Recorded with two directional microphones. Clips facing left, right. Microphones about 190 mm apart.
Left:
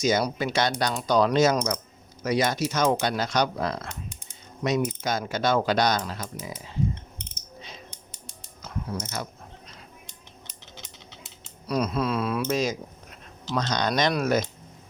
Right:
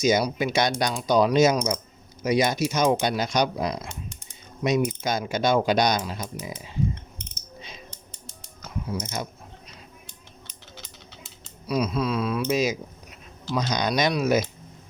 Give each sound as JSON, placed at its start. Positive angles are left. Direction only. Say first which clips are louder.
{"t": 0.0, "sound": "speech", "louder": "right 2 dB", "side_deg": -10}
{"t": 8.9, "sound": "speech", "louder": "right 3 dB", "side_deg": -15}
{"t": 10.8, "sound": "a sound", "louder": "right 1 dB", "side_deg": 15}
{"t": 11.7, "sound": "speech", "louder": "right 1 dB", "side_deg": 0}